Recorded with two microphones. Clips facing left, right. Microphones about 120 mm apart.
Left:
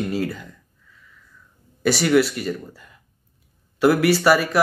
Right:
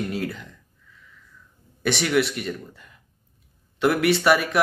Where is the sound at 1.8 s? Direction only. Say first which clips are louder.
Left 4 dB; 5° left (ahead or behind).